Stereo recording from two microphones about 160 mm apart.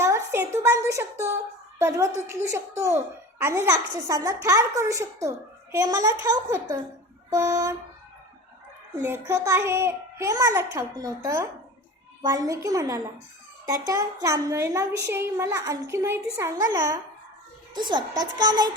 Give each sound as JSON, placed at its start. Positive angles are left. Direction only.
{"t": 0.0, "sound": "a woman's voice", "side_deg": -20}
{"t": 9.0, "sound": "a child's voice", "side_deg": -15}